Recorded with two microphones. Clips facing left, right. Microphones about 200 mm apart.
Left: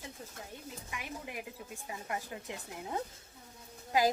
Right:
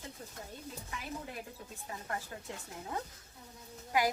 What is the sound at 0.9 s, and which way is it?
Speech, 15° left (ahead or behind).